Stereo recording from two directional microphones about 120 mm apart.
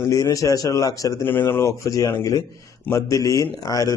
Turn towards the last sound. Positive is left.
turn(degrees=30)  # may be behind; listen again after turning